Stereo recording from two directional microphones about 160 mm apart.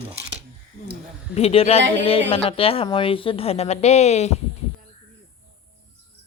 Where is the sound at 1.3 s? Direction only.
40° left (ahead or behind).